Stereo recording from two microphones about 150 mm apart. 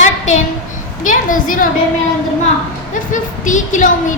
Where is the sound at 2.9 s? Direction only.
60° left (ahead or behind).